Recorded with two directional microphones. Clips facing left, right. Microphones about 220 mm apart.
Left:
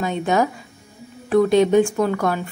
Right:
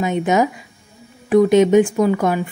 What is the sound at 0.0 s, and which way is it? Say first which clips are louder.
A woman's voice: right 3 dB; 20° right (ahead or behind).